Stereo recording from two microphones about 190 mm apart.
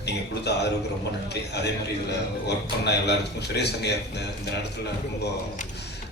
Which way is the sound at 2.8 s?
60° left (ahead or behind).